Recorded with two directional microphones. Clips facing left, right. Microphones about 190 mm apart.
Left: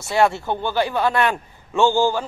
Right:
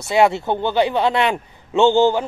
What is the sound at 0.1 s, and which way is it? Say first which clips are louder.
A man's voice: right 3 dB; 20° right (ahead or behind).